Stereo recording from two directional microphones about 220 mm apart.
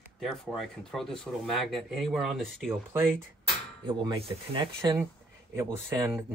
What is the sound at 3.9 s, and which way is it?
Speech, 20° right (ahead or behind).